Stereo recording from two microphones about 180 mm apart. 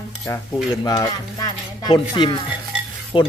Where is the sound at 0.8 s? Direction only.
20° left (ahead or behind).